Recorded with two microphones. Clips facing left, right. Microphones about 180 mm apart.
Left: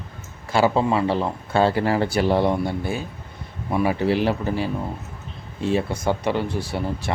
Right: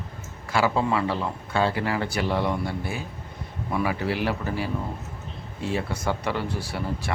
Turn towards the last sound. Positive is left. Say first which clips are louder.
# left 4 dB
turn(degrees=20)  # may be behind; listen again after turning